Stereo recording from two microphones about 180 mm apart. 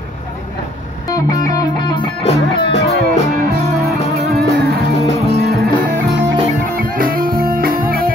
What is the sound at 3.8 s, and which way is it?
Music, 60° right (ahead or behind).